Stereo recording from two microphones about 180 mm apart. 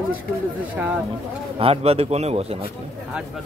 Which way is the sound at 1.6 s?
35° right (ahead or behind).